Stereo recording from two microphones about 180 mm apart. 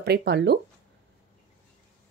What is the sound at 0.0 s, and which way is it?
Speech, 65° right (ahead or behind).